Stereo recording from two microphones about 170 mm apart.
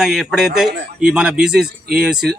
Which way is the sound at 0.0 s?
Centre (ahead or behind).